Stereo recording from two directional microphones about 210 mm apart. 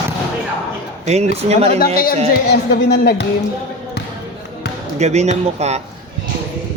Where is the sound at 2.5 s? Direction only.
50° left (ahead or behind).